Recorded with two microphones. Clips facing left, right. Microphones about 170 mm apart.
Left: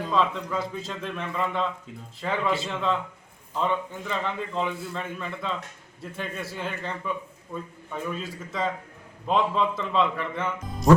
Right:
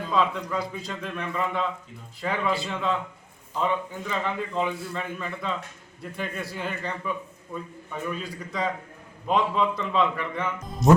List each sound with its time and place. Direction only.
0.1 s a man's voice: centre (ahead or behind)